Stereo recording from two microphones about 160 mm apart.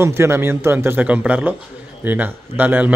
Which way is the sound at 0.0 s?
15° right (ahead or behind).